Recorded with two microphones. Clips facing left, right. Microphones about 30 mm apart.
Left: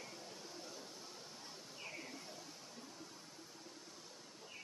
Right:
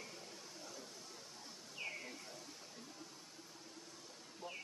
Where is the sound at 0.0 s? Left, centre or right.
Centre.